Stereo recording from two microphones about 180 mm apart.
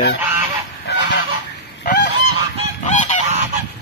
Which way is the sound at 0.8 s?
75° left (ahead or behind).